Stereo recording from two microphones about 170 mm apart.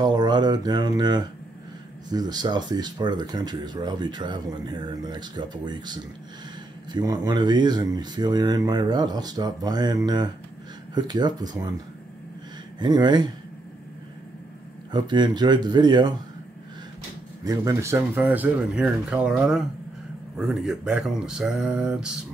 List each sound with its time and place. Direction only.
0.0 s speech: 25° right (ahead or behind)
12.7 s speech: 25° right (ahead or behind)
14.9 s speech: 25° right (ahead or behind)
17.5 s speech: 20° right (ahead or behind)